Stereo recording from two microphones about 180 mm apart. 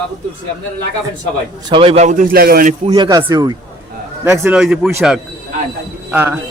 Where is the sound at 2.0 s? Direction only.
50° right (ahead or behind).